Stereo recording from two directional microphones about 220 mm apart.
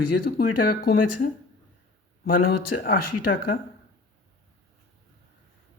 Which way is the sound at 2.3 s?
40° left (ahead or behind).